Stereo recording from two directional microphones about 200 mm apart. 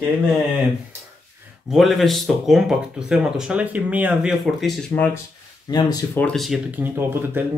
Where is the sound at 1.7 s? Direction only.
Centre (ahead or behind).